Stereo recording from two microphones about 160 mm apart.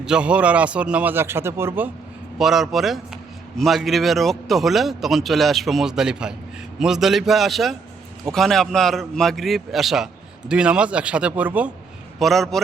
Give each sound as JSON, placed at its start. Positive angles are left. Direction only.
{"t": 0.0, "sound": "a man's voice", "side_deg": -5}
{"t": 2.4, "sound": "a man's voice", "side_deg": 0}
{"t": 12.2, "sound": "a man's voice", "side_deg": 0}